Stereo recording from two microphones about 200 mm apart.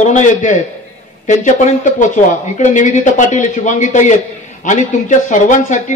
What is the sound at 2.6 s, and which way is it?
Speech, 35° left (ahead or behind).